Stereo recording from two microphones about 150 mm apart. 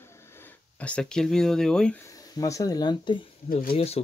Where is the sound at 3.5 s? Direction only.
70° left (ahead or behind).